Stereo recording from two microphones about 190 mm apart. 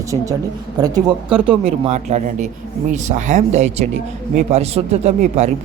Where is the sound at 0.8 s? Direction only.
20° right (ahead or behind).